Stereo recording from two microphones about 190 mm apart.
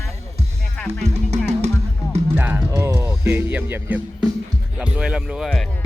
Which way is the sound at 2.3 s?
10° right (ahead or behind).